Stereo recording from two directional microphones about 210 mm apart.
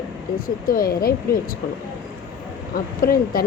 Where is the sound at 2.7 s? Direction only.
45° left (ahead or behind).